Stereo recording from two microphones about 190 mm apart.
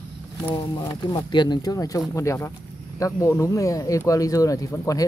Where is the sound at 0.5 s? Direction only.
20° left (ahead or behind).